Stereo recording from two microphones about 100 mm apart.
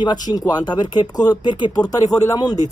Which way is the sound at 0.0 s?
45° left (ahead or behind).